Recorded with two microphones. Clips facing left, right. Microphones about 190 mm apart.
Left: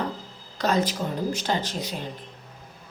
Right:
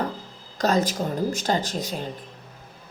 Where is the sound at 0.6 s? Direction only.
40° right (ahead or behind).